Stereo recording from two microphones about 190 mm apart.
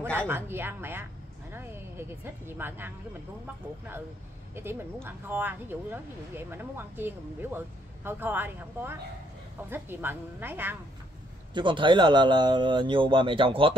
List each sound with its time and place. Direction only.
0.0 s speech: 5° left (ahead or behind)
0.3 s speech: 10° right (ahead or behind)
4.6 s speech: 10° right (ahead or behind)
11.5 s speech: 25° right (ahead or behind)